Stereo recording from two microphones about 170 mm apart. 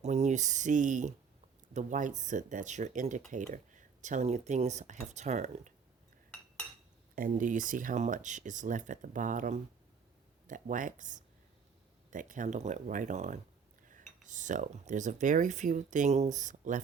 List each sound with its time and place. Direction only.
0.0 s speech: 45° right (ahead or behind)
7.2 s speech: 50° right (ahead or behind)